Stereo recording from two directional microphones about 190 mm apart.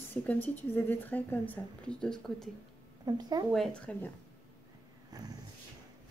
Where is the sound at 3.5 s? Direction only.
5° left (ahead or behind).